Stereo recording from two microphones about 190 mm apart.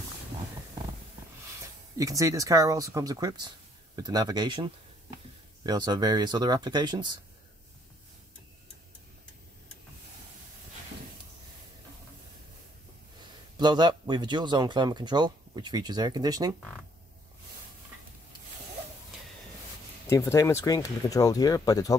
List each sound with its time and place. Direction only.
2.0 s speech: 15° right (ahead or behind)
13.6 s speech: 25° right (ahead or behind)
20.1 s speech: 15° left (ahead or behind)